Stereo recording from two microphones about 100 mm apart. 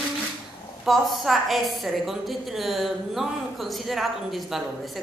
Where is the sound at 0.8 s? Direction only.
Centre (ahead or behind).